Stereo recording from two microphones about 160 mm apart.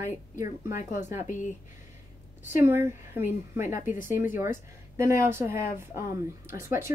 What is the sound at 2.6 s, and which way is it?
Speech, 15° right (ahead or behind).